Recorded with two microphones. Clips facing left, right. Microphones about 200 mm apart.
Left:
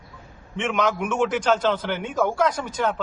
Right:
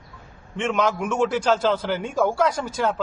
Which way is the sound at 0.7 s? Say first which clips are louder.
Right 1 dB; 5° left (ahead or behind).